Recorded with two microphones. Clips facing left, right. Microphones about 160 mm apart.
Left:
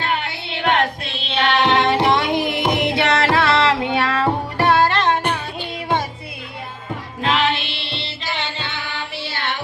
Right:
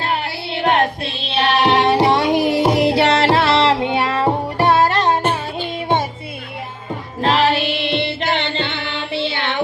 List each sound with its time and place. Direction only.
0.0 s music: 35° right (ahead or behind)
7.2 s music: 35° right (ahead or behind); by 9.6 s 60° right (ahead or behind)